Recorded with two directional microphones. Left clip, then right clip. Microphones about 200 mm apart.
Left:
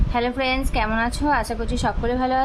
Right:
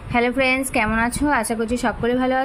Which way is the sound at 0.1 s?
10° right (ahead or behind).